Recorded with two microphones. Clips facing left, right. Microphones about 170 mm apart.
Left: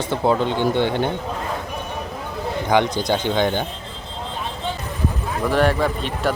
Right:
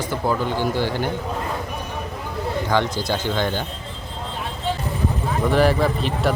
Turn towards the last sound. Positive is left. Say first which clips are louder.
# right 1 dB
turn(degrees=0)  # may be behind; listen again after turning